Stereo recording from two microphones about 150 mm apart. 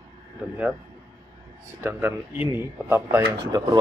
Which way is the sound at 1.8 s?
15° right (ahead or behind).